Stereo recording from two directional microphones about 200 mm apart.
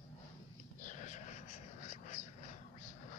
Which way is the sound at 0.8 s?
40° left (ahead or behind).